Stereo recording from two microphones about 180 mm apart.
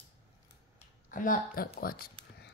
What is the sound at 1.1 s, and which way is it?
Speech, 50° left (ahead or behind).